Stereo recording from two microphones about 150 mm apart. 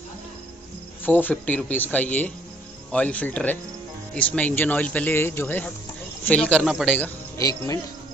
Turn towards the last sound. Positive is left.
turn(degrees=25)  # may be behind; listen again after turning